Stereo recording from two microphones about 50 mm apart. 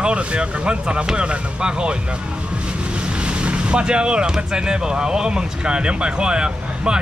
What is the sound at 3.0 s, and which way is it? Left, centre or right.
Speech, right.